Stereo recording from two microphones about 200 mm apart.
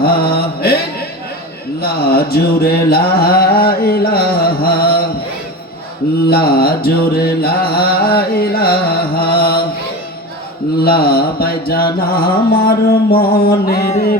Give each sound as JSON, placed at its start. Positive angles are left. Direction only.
{"t": 0.0, "sound": "mantra", "side_deg": 50}
{"t": 1.8, "sound": "mantra", "side_deg": 50}
{"t": 6.2, "sound": "mantra", "side_deg": 50}
{"t": 10.8, "sound": "mantra", "side_deg": 50}